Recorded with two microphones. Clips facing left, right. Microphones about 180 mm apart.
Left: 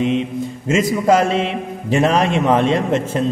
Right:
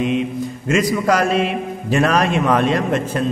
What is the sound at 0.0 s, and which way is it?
Music, 25° left (ahead or behind).